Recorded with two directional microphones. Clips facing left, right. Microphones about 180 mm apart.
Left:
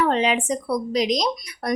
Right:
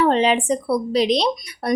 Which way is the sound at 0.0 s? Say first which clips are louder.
Right 3 dB; 30° right (ahead or behind).